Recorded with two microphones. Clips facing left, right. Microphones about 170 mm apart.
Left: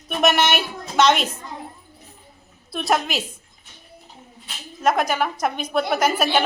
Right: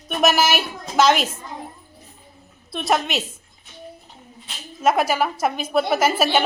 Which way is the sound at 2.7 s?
Centre (ahead or behind).